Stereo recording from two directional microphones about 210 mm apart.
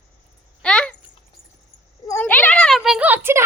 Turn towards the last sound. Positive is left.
turn(degrees=-10)  # may be behind; listen again after turning